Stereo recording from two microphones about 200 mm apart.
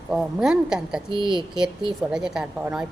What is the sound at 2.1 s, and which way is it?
Speech, 5° right (ahead or behind).